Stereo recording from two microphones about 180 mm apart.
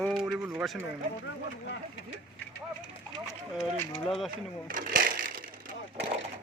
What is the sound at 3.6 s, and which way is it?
Speech, centre (ahead or behind).